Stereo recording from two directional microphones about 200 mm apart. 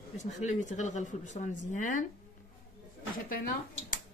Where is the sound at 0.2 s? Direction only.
35° left (ahead or behind).